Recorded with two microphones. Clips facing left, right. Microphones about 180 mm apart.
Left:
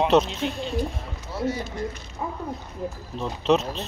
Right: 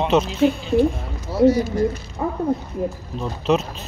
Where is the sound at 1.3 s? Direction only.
40° right (ahead or behind).